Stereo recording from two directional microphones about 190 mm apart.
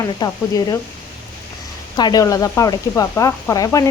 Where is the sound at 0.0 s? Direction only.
20° left (ahead or behind).